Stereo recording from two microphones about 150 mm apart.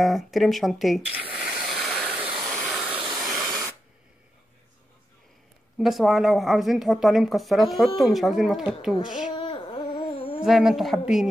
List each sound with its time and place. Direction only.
0.0 s a woman's voice: centre (ahead or behind)
1.3 s vehicle: 5° right (ahead or behind)
3.2 s spray: centre (ahead or behind)
5.8 s a woman's voice: centre (ahead or behind)
9.4 s dog: 35° left (ahead or behind)
10.4 s a woman's voice: 5° right (ahead or behind)